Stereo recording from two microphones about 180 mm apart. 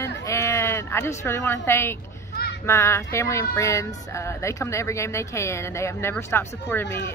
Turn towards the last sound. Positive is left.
turn(degrees=10)  # may be behind; listen again after turning